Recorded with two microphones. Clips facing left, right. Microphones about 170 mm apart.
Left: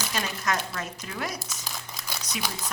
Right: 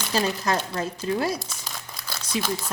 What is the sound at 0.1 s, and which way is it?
Speech, 30° right (ahead or behind).